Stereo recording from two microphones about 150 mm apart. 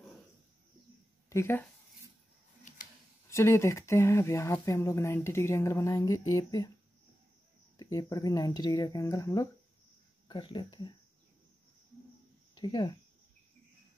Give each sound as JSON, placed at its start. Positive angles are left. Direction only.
{"t": 1.3, "sound": "speech", "side_deg": 15}
{"t": 3.3, "sound": "speech", "side_deg": 20}
{"t": 7.7, "sound": "speech", "side_deg": 25}
{"t": 12.5, "sound": "speech", "side_deg": 30}